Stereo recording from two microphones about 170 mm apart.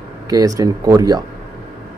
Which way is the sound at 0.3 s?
20° right (ahead or behind).